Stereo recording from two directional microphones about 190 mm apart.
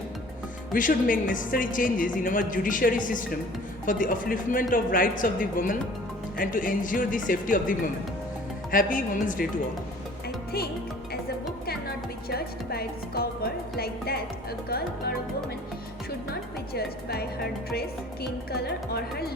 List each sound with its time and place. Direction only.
0.7 s a woman's voice: 45° left (ahead or behind)
10.2 s music: 55° left (ahead or behind)
14.7 s speech: 55° left (ahead or behind)
16.3 s speech: 55° left (ahead or behind)